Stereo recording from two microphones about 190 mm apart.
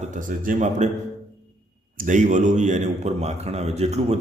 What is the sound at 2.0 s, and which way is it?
A man's voice, 40° right (ahead or behind).